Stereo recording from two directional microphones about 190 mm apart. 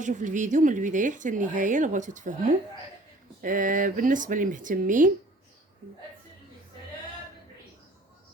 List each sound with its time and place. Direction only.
0.0 s speech: 40° right (ahead or behind)